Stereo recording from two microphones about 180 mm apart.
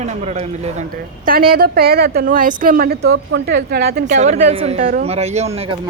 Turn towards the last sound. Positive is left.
turn(degrees=-35)  # may be behind; listen again after turning